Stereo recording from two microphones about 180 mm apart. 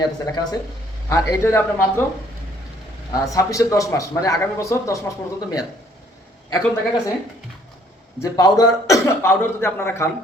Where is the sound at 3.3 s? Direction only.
20° left (ahead or behind).